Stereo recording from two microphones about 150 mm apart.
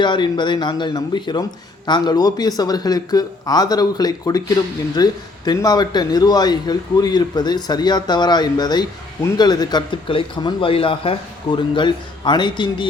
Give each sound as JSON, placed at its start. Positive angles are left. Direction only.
{"t": 0.0, "sound": "a man's voice", "side_deg": 30}